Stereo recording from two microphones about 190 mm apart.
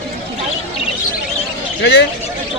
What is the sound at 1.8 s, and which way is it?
Speech, 60° left (ahead or behind).